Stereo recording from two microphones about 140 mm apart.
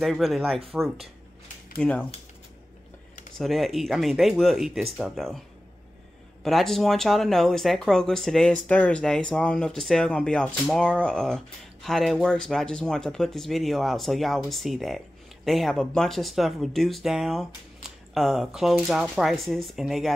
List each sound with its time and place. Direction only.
0.0 s speech: centre (ahead or behind)
3.3 s speech: centre (ahead or behind)
6.4 s speech: centre (ahead or behind)